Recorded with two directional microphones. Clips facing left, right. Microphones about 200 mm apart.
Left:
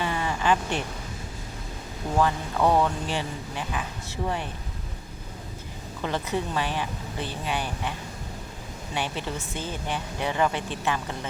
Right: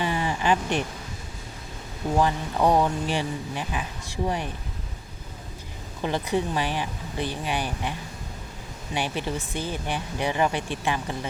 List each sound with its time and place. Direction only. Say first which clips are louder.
0.0 s a sound: right 1 dB; 20° right (ahead or behind)
2.1 s speech: even; 15° right (ahead or behind)
6.0 s speech: right 3 dB; 15° right (ahead or behind)
9.0 s speech: right 2 dB; 15° right (ahead or behind)